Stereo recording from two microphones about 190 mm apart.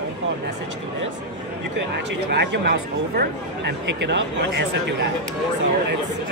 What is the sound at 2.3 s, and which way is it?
Speech, 65° right (ahead or behind).